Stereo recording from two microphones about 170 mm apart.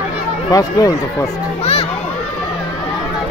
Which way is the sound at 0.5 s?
20° left (ahead or behind).